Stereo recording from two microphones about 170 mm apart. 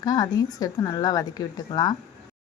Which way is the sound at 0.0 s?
25° left (ahead or behind).